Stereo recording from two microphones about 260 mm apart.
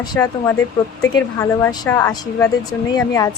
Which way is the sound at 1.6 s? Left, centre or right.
Centre.